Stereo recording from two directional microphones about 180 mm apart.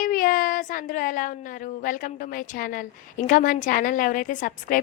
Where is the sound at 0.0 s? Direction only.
50° left (ahead or behind).